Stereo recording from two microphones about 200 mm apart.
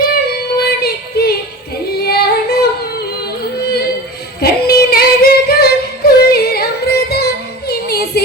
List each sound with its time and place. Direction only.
0.0 s music: 50° left (ahead or behind)
2.0 s yodeling: 50° left (ahead or behind)
4.4 s singing: 50° left (ahead or behind)